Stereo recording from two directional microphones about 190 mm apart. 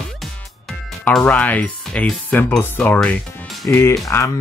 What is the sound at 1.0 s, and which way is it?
Speech, 10° left (ahead or behind).